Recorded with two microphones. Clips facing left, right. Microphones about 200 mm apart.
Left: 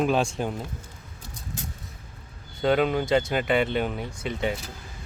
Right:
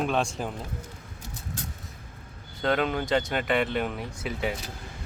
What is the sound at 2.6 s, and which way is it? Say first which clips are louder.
Speech: left 4 dB; centre (ahead or behind).